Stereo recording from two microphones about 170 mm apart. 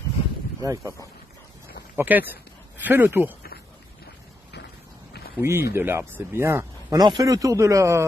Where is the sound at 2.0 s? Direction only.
10° right (ahead or behind).